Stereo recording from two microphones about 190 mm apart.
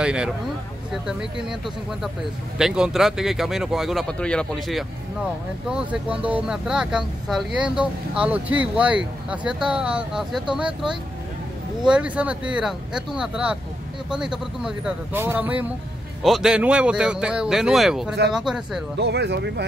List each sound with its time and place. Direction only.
0.0 s speech: 5° right (ahead or behind)
2.6 s speech: 5° right (ahead or behind)
18.9 s speech: 60° right (ahead or behind)